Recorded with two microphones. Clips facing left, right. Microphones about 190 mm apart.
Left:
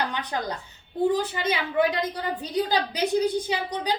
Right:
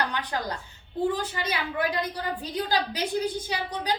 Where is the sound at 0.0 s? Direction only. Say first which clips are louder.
Left 1 dB; 20° left (ahead or behind).